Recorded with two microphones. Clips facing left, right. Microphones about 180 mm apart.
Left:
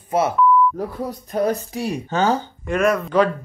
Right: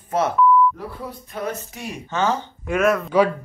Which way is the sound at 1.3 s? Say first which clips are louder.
Left 8 dB; 35° left (ahead or behind).